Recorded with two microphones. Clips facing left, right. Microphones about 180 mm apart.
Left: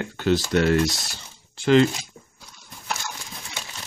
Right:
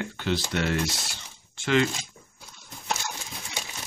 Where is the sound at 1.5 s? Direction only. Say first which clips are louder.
Left 7 dB; 35° left (ahead or behind).